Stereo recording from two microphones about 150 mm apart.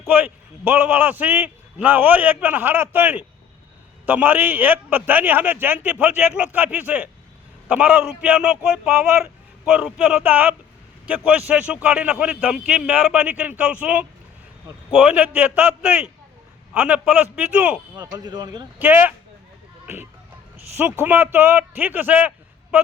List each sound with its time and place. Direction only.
0.1 s a man's voice: 10° right (ahead or behind)
17.9 s speech: 25° right (ahead or behind)
18.8 s a man's voice: 15° right (ahead or behind)
21.0 s a man's voice: 15° right (ahead or behind)